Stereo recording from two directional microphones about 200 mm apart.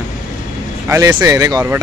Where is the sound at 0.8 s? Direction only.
15° right (ahead or behind).